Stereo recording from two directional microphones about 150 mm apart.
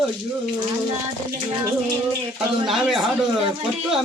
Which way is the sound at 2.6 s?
Centre (ahead or behind).